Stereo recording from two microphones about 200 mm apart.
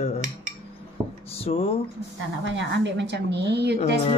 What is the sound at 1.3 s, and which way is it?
Speech, 30° left (ahead or behind).